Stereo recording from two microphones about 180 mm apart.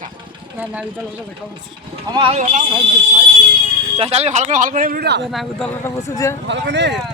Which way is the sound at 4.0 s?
35° right (ahead or behind).